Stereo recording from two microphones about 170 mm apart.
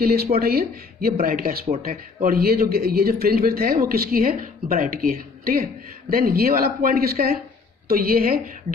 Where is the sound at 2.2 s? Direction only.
60° right (ahead or behind).